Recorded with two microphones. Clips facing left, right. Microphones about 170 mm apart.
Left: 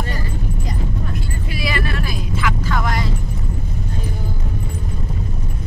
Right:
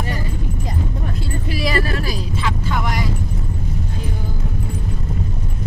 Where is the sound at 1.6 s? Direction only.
35° right (ahead or behind).